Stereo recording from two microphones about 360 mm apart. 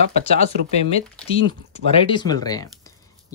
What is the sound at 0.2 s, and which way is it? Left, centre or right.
Speech, centre.